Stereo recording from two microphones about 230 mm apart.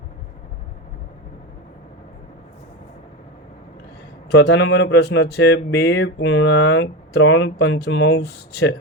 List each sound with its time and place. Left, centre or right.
4.3 s speech: left